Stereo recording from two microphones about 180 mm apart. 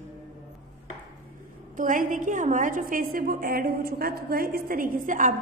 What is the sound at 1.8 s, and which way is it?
A woman's voice, 45° right (ahead or behind).